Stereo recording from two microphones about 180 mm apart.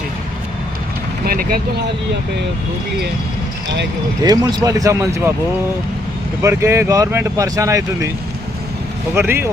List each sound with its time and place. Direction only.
1.2 s speech: 55° right (ahead or behind)
4.2 s speech: 20° right (ahead or behind)
6.4 s speech: 15° right (ahead or behind)
9.1 s speech: 15° right (ahead or behind)